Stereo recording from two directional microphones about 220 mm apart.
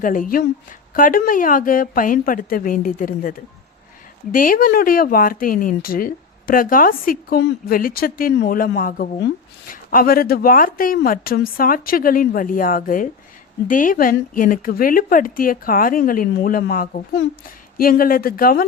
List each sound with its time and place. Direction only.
0.0 s speech: 40° left (ahead or behind)